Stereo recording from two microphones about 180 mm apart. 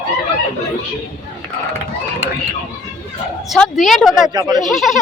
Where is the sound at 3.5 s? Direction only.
Centre (ahead or behind).